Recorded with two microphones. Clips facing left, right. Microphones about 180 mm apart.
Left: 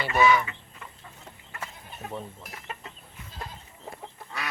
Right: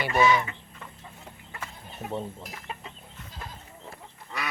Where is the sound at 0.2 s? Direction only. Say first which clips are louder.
Left 1 dB; 25° right (ahead or behind).